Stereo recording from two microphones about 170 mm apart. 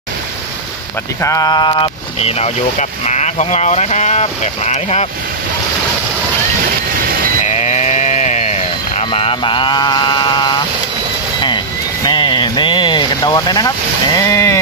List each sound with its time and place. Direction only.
1.2 s speech: 20° left (ahead or behind); by 5.0 s 40° left (ahead or behind)
7.4 s sheep: 45° left (ahead or behind); by 10.6 s 25° left (ahead or behind)
11.4 s a sound: 25° left (ahead or behind)